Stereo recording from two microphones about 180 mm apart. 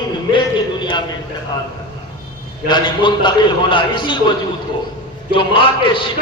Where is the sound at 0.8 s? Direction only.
25° left (ahead or behind).